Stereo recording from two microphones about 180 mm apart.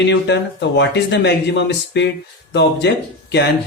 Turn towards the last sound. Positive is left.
turn(degrees=70)  # may be behind; listen again after turning